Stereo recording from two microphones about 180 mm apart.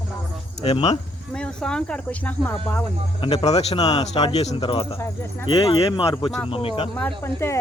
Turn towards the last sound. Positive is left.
turn(degrees=15)  # may be behind; listen again after turning